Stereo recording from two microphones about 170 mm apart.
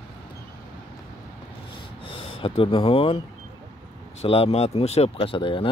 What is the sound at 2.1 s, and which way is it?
Speech, 30° left (ahead or behind).